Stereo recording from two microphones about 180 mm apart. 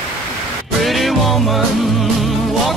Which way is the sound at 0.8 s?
Centre (ahead or behind).